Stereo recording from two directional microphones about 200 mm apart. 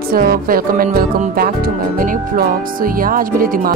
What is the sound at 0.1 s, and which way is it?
Speech, 50° right (ahead or behind).